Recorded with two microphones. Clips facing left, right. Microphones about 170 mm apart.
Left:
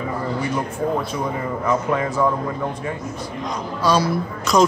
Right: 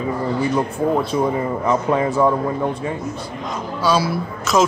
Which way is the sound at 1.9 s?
30° right (ahead or behind).